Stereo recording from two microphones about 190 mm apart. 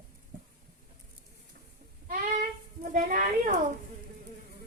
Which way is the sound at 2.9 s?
40° right (ahead or behind).